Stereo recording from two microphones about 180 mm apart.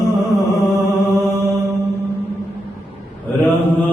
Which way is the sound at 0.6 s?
15° left (ahead or behind).